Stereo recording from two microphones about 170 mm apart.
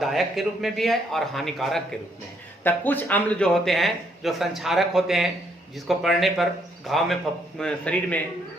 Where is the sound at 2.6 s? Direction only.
10° left (ahead or behind).